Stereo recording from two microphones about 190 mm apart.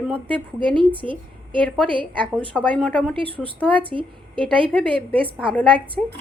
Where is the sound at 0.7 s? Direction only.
25° right (ahead or behind).